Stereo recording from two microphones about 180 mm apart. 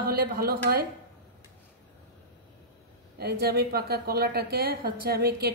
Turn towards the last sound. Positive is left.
turn(degrees=-60)  # may be behind; listen again after turning